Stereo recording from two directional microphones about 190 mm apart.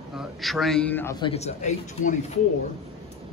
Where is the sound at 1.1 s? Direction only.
30° left (ahead or behind).